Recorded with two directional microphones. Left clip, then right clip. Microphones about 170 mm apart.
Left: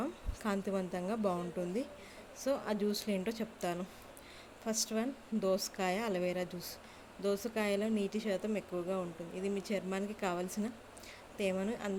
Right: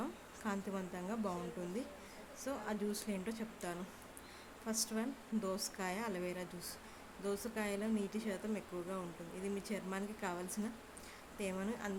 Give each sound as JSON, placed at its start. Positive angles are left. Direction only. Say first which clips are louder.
{"t": 0.0, "sound": "a woman's voice", "louder": "left 5 dB", "side_deg": 25}